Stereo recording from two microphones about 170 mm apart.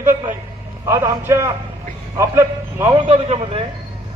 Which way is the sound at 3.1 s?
35° right (ahead or behind).